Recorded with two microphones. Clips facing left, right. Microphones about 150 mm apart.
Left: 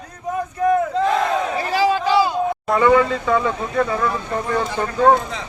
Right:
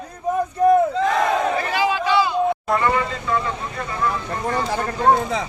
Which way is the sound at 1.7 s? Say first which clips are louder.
Left 5 dB; 40° left (ahead or behind).